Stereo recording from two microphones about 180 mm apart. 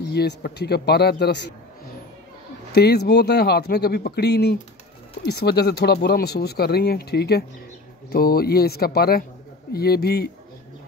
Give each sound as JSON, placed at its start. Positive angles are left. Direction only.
{"t": 0.1, "sound": "speech", "side_deg": 65}
{"t": 2.7, "sound": "speech", "side_deg": 60}